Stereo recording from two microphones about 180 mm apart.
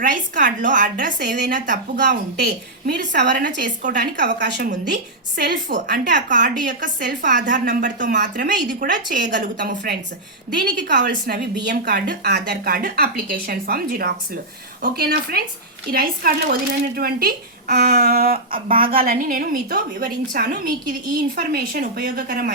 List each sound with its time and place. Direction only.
0.0 s a woman's voice: 50° right (ahead or behind)
2.4 s speech: 65° right (ahead or behind)
3.2 s a woman's voice: 45° right (ahead or behind)
4.4 s speech: 70° right (ahead or behind)
5.4 s a woman's voice: 50° right (ahead or behind)
11.6 s a woman's voice: 65° right (ahead or behind); by 22.5 s 50° right (ahead or behind)